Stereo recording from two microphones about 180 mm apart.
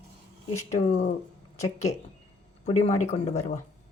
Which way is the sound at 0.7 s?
40° left (ahead or behind).